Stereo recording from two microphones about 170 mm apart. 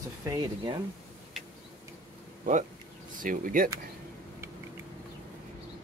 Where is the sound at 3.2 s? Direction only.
55° right (ahead or behind).